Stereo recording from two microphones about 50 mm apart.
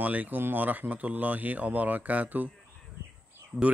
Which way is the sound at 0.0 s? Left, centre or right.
Right.